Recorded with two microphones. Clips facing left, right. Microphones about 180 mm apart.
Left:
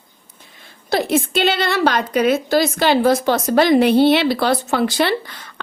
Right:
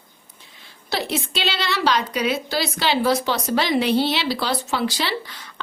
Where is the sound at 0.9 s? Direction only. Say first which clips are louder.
Left 8 dB; 50° left (ahead or behind).